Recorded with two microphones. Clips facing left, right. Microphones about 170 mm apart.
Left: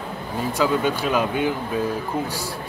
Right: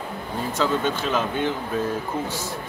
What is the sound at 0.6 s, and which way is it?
Speech, 10° left (ahead or behind).